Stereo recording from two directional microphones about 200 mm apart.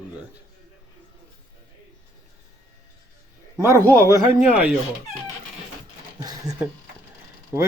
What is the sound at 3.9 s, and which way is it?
Speech, 15° right (ahead or behind).